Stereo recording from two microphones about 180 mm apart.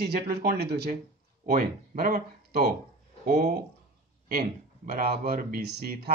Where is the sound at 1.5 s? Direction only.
55° right (ahead or behind).